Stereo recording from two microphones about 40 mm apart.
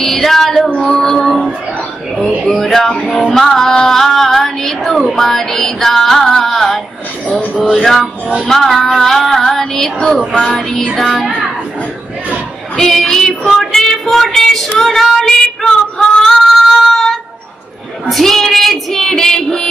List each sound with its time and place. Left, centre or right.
0.0 s female singing: centre
0.7 s music: centre
3.3 s child singing: centre
5.1 s music: centre
12.7 s female singing: centre
13.7 s child singing: centre
15.1 s female singing: centre
18.0 s speech: centre